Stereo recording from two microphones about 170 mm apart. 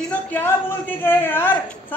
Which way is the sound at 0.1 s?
10° left (ahead or behind).